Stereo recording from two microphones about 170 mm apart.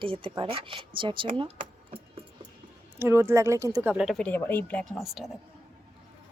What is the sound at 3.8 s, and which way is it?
Speech, 5° right (ahead or behind).